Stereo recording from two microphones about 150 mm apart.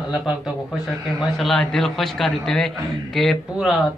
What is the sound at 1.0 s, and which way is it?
A man's voice, centre (ahead or behind).